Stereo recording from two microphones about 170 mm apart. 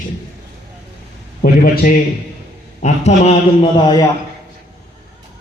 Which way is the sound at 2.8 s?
40° left (ahead or behind).